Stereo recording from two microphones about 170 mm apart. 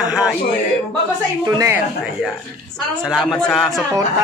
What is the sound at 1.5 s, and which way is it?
Speech, 20° right (ahead or behind).